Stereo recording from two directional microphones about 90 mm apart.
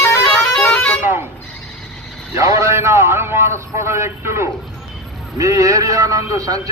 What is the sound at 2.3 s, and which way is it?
A man's voice, 35° right (ahead or behind).